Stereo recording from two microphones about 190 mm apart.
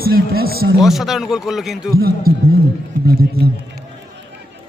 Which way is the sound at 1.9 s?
55° right (ahead or behind).